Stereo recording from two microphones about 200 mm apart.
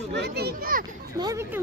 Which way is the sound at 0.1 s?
55° right (ahead or behind).